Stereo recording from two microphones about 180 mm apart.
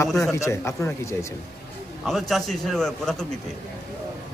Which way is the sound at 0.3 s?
15° left (ahead or behind).